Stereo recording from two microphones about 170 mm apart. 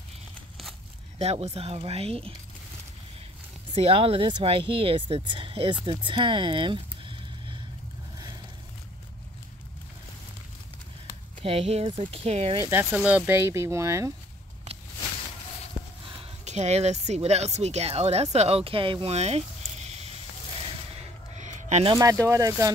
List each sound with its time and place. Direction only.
1.1 s speech: 35° right (ahead or behind)
3.7 s speech: 35° right (ahead or behind)
5.9 s a sound: 30° right (ahead or behind)
11.4 s speech: 35° right (ahead or behind)
12.5 s speech: 15° right (ahead or behind)
16.4 s speech: 40° right (ahead or behind)
21.4 s a sound: 45° right (ahead or behind)
21.9 s speech: 20° right (ahead or behind)